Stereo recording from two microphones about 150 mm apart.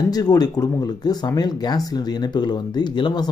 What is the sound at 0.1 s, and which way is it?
Speech, 25° left (ahead or behind).